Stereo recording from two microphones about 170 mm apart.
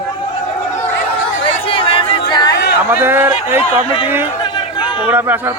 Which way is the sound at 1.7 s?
30° left (ahead or behind).